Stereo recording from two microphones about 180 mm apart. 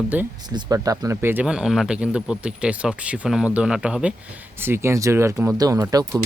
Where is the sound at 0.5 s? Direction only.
20° right (ahead or behind).